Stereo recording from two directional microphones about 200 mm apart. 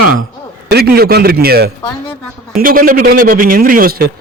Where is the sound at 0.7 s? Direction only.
50° right (ahead or behind).